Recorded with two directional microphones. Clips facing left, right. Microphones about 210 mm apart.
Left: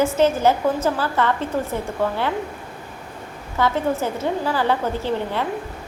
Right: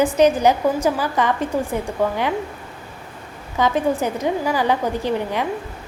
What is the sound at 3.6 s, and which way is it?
A woman's voice, 15° right (ahead or behind).